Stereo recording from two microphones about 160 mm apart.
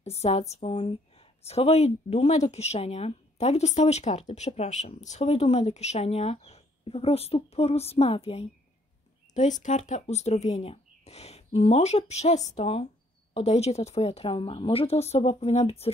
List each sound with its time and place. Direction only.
0.0 s a woman's voice: 40° left (ahead or behind)
9.3 s a woman's voice: 50° left (ahead or behind)